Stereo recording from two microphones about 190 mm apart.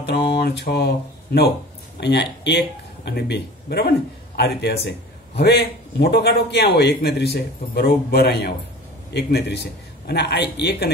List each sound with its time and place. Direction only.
0.0 s a man's voice: 60° left (ahead or behind)